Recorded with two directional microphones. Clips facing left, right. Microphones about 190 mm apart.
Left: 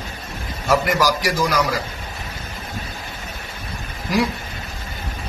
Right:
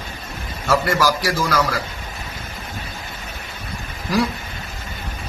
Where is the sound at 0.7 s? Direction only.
15° left (ahead or behind).